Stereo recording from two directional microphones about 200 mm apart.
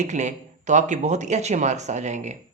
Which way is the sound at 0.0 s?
35° right (ahead or behind).